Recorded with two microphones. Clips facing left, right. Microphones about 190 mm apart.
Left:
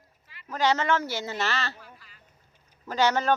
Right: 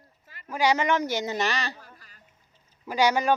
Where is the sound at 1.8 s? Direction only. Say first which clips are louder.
Left 1 dB; 45° right (ahead or behind).